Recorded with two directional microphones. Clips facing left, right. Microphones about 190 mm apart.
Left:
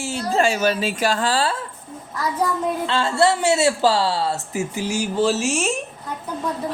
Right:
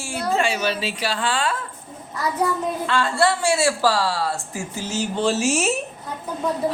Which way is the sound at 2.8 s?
25° left (ahead or behind).